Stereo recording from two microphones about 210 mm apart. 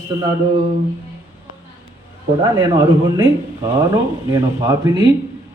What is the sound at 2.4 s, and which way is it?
Speech, 25° right (ahead or behind).